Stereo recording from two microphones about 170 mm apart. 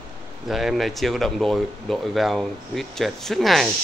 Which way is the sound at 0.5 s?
Centre (ahead or behind).